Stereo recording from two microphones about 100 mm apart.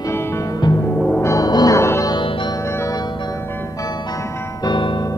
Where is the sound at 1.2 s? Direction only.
40° left (ahead or behind).